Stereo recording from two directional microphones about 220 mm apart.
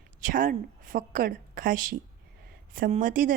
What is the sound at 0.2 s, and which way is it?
A woman's voice, 35° right (ahead or behind).